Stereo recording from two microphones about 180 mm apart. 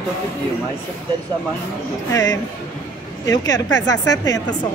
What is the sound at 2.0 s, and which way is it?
Speech, 20° left (ahead or behind).